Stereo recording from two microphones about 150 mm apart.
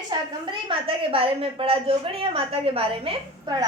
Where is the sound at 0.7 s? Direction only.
35° right (ahead or behind).